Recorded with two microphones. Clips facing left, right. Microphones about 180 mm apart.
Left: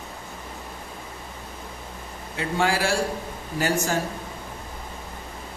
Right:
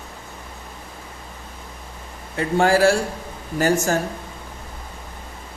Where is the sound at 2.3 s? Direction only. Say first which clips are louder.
Right 7 dB; 45° right (ahead or behind).